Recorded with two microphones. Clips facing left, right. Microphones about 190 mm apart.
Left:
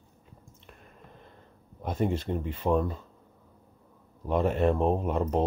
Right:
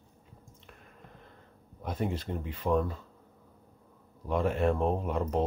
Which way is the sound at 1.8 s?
25° left (ahead or behind).